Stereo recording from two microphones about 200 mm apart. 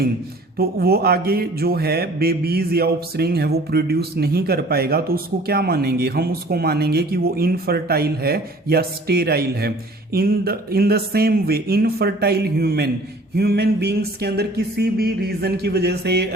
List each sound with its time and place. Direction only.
0.6 s speech: 50° right (ahead or behind)